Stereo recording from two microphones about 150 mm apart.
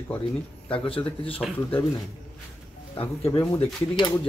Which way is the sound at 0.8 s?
40° left (ahead or behind).